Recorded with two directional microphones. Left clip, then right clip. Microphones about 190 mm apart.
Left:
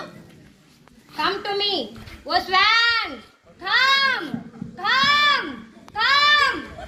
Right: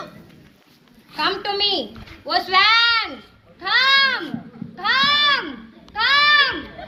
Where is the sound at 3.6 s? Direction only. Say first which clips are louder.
Right 2 dB; 35° left (ahead or behind).